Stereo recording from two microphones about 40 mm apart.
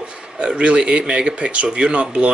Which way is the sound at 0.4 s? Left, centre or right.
Right.